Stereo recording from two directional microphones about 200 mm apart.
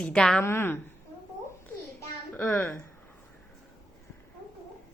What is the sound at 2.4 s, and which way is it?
Speech, 10° left (ahead or behind).